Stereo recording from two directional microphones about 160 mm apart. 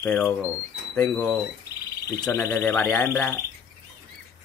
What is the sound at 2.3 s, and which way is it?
Speech, 15° left (ahead or behind).